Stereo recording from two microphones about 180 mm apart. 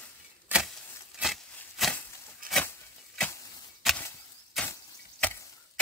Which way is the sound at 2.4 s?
50° right (ahead or behind).